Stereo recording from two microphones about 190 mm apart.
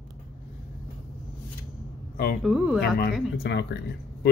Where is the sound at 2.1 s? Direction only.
50° left (ahead or behind).